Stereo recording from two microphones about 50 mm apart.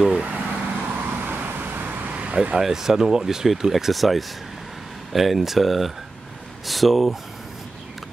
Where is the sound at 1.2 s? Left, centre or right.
Right.